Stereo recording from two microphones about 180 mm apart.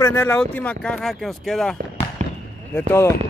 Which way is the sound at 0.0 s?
10° left (ahead or behind).